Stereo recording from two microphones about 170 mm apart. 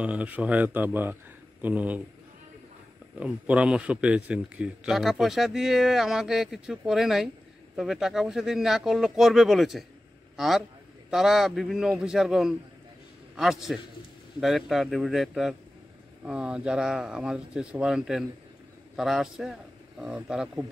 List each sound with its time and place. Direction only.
0.0 s speech: 10° right (ahead or behind)
3.2 s a man's voice: 5° right (ahead or behind)